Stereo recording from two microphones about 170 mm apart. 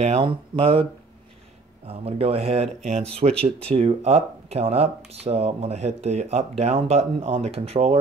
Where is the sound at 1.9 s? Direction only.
35° right (ahead or behind).